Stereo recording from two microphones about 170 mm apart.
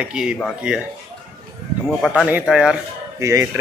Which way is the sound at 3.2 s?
15° right (ahead or behind).